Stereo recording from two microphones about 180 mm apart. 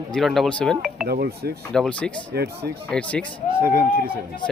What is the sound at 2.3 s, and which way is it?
Speech, 65° right (ahead or behind).